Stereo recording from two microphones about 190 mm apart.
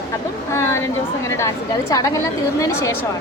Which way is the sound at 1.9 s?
20° left (ahead or behind).